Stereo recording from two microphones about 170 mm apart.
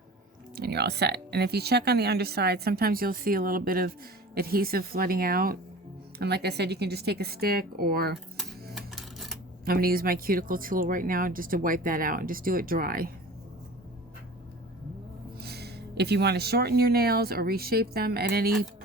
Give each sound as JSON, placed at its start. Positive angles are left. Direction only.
{"t": 0.5, "sound": "speech", "side_deg": -70}
{"t": 6.1, "sound": "speech", "side_deg": -75}
{"t": 8.7, "sound": "coin", "side_deg": 0}
{"t": 9.6, "sound": "speech", "side_deg": -60}
{"t": 15.4, "sound": "speech", "side_deg": -70}